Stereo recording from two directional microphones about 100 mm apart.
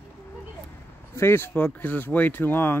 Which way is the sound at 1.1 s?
25° left (ahead or behind).